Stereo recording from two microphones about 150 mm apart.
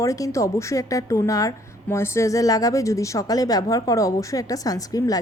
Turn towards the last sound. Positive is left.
turn(degrees=25)  # may be behind; listen again after turning